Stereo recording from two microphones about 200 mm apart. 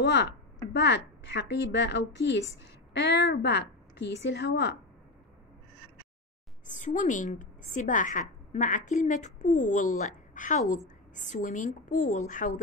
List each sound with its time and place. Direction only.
0.7 s a woman's voice: 60° left (ahead or behind)
6.7 s a woman's voice: 40° left (ahead or behind)